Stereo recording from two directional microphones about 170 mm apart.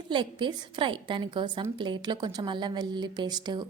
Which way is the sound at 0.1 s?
25° right (ahead or behind).